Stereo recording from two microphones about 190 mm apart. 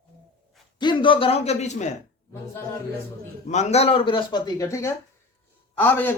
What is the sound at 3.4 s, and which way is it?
A man's voice, 35° left (ahead or behind).